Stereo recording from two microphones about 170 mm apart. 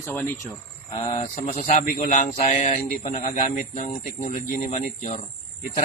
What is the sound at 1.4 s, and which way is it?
A man's voice, 50° left (ahead or behind).